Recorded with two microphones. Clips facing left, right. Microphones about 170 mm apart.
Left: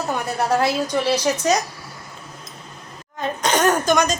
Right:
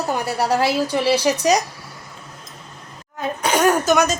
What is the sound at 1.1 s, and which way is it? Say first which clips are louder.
Speech: right 2 dB; 30° right (ahead or behind).